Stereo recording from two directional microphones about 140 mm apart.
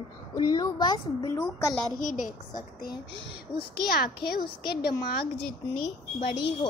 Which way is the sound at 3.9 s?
90° left.